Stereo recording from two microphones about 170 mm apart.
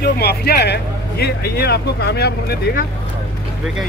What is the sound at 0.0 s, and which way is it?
Speech, 70° left (ahead or behind).